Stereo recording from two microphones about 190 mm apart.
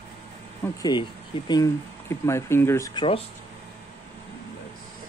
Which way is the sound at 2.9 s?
30° left (ahead or behind).